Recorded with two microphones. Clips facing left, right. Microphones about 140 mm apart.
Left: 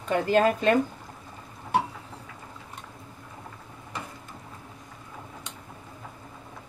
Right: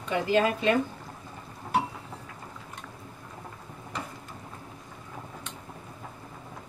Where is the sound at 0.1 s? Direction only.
45° left (ahead or behind).